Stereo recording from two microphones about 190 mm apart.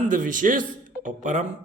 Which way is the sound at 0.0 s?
45° right (ahead or behind).